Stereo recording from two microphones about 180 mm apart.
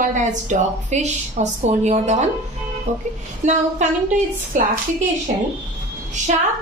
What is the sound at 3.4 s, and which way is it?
Speech, 40° right (ahead or behind).